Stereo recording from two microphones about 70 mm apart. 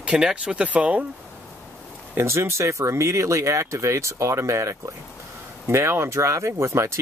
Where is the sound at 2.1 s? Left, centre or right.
Right.